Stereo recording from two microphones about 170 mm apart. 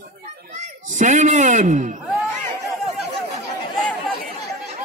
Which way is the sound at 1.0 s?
45° right (ahead or behind).